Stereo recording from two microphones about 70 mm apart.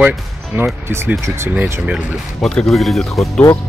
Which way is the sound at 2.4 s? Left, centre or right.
Centre.